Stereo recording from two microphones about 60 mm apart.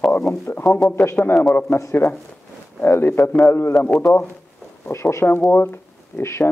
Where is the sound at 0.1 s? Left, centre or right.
Left.